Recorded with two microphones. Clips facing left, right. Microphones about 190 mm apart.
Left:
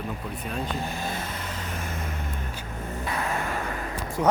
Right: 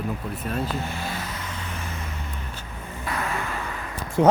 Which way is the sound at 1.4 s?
40° left (ahead or behind).